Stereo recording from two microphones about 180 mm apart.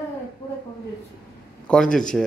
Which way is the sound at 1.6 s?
5° left (ahead or behind).